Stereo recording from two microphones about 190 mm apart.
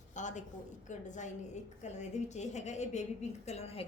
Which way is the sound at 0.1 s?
40° left (ahead or behind).